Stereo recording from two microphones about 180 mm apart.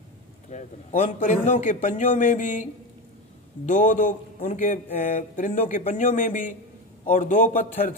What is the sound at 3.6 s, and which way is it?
Speech, 45° left (ahead or behind).